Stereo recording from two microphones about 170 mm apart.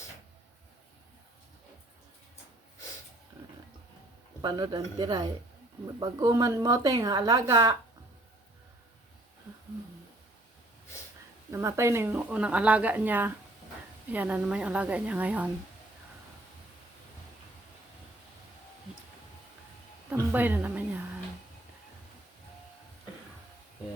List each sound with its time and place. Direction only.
4.4 s speech: 25° right (ahead or behind)
11.5 s speech: 15° right (ahead or behind)
20.1 s speech: 10° right (ahead or behind)